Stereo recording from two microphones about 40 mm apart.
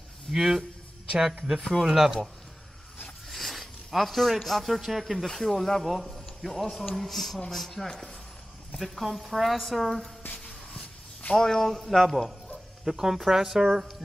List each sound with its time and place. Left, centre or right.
0.3 s a woman's voice: centre
1.1 s speech: right
1.6 s a woman's voice: centre
1.9 s speech: centre
3.3 s a woman's voice: centre
7.9 s speech: centre
8.7 s a woman's voice: centre
10.4 s a sound: left
11.3 s speech: centre
12.8 s speech: centre